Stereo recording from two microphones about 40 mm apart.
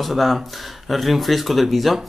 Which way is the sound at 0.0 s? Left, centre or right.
Centre.